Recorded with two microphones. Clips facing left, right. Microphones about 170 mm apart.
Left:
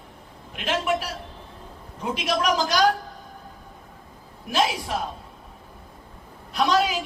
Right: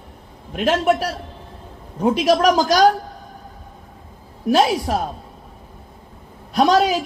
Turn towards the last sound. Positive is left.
turn(degrees=-40)  # may be behind; listen again after turning